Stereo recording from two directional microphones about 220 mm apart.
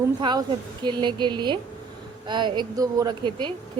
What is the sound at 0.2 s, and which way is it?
A woman's voice, 20° right (ahead or behind).